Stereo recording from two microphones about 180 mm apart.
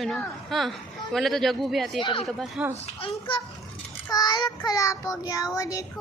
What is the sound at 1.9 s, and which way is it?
Child singing, 30° left (ahead or behind).